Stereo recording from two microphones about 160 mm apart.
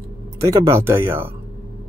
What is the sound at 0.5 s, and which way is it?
Speech, 15° right (ahead or behind).